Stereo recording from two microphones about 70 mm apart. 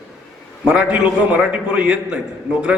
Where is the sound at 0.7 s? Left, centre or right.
Centre.